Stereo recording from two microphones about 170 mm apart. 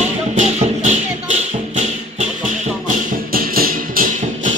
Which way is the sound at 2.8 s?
60° right (ahead or behind).